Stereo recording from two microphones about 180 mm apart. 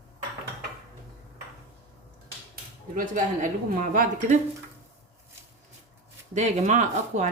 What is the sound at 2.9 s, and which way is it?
Speech, 45° right (ahead or behind).